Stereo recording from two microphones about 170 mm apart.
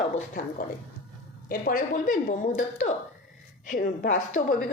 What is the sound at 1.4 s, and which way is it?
A woman's voice, 55° left (ahead or behind).